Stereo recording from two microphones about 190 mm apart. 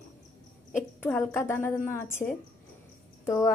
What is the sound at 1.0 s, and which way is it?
Speech, 10° left (ahead or behind).